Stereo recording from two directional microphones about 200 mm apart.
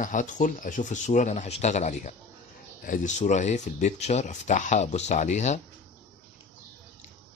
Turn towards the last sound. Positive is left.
turn(degrees=35)  # may be behind; listen again after turning